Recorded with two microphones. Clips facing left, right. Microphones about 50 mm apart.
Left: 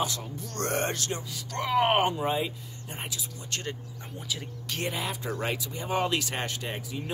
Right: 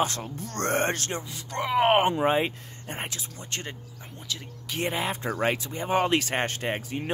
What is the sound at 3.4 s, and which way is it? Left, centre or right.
Speech, right.